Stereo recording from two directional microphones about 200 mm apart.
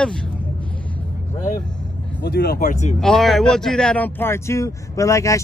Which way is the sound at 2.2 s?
50° left (ahead or behind).